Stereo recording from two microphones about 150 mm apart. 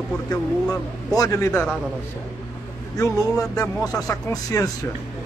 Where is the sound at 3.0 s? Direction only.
20° left (ahead or behind).